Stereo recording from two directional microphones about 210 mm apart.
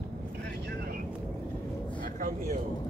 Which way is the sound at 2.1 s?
40° right (ahead or behind).